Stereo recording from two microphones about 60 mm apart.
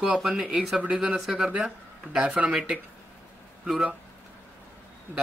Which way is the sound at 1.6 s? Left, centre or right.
Centre.